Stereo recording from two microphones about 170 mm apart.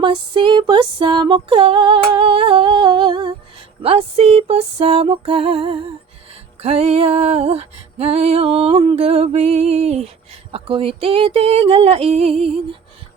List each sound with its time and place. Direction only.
0.0 s music: 30° right (ahead or behind)